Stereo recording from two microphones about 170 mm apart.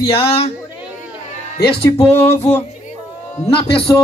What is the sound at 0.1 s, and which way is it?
Speech, 35° left (ahead or behind).